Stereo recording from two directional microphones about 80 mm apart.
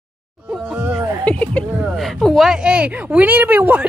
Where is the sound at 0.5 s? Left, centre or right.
Centre.